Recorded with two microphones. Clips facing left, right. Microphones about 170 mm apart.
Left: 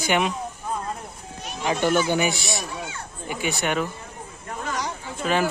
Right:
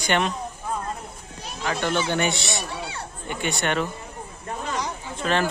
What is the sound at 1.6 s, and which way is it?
A man's voice, 10° left (ahead or behind).